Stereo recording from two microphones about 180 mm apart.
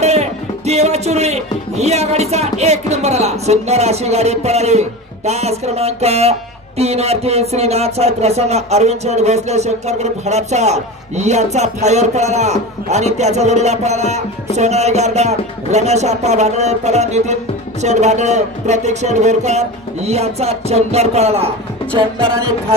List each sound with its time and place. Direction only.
0.0 s music: 35° right (ahead or behind)
6.8 s speech: 35° right (ahead or behind)